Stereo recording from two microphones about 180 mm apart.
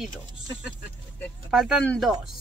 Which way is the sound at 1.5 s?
Centre (ahead or behind).